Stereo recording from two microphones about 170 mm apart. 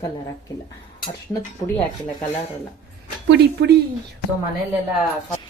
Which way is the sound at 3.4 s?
75° right (ahead or behind).